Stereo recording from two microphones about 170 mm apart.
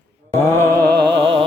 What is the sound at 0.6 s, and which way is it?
Music, 20° right (ahead or behind).